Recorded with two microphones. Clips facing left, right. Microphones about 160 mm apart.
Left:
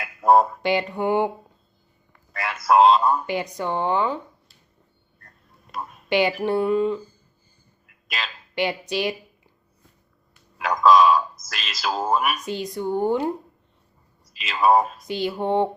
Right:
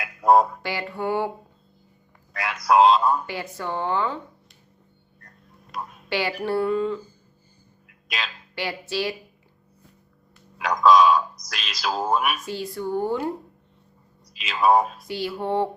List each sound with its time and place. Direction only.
0.0 s a sound: centre (ahead or behind)
0.6 s speech: 20° left (ahead or behind)
2.3 s speech: centre (ahead or behind)
3.2 s speech: 20° left (ahead or behind)
5.7 s a sound: centre (ahead or behind)
6.1 s speech: 20° left (ahead or behind)
7.9 s a sound: centre (ahead or behind)
8.5 s speech: 20° left (ahead or behind)
10.6 s speech: centre (ahead or behind)
12.5 s speech: 20° left (ahead or behind)
14.3 s speech: centre (ahead or behind)
15.0 s speech: 20° left (ahead or behind)